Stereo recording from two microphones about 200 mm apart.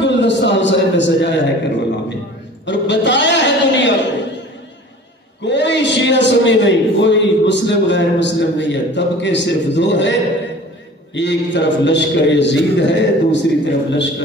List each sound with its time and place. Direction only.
0.0 s a sound: 65° left (ahead or behind)
5.4 s a man's voice: 60° left (ahead or behind)
11.1 s a man's voice: 60° left (ahead or behind)